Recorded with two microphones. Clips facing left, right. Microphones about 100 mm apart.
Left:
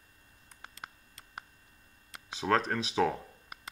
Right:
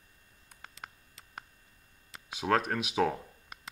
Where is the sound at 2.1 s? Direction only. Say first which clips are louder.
Even; 5° right (ahead or behind).